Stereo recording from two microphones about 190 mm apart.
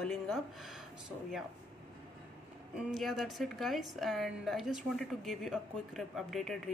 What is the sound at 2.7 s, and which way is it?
A woman's voice, centre (ahead or behind).